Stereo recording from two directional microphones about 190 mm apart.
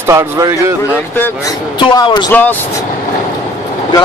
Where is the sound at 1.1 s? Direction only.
10° left (ahead or behind).